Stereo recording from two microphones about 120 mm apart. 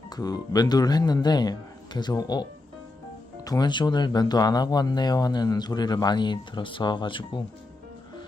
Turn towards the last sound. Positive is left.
turn(degrees=45)  # may be behind; listen again after turning